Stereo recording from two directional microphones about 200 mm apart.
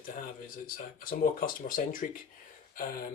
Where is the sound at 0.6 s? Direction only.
45° left (ahead or behind).